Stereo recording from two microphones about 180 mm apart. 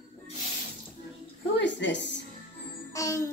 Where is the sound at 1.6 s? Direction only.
80° left.